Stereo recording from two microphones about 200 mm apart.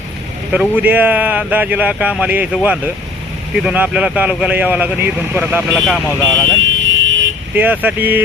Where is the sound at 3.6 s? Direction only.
5° right (ahead or behind).